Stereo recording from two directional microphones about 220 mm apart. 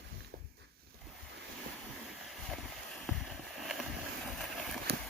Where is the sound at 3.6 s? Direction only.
Centre (ahead or behind).